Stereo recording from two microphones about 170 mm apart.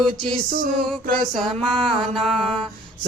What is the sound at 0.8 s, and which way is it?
Music, 5° left (ahead or behind).